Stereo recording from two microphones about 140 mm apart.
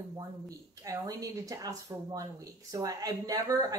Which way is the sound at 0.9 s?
25° right (ahead or behind).